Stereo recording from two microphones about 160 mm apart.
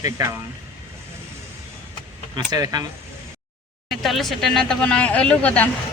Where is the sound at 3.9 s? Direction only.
Centre (ahead or behind).